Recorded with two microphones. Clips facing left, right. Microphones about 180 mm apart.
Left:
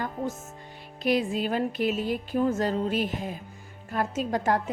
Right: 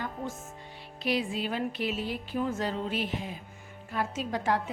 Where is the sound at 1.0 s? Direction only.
45° left (ahead or behind).